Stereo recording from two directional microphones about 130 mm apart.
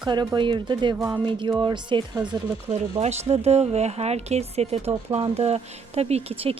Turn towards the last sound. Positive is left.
turn(degrees=-50)  # may be behind; listen again after turning